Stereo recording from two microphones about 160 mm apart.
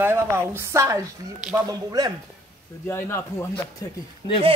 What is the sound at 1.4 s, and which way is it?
Speech, 5° right (ahead or behind).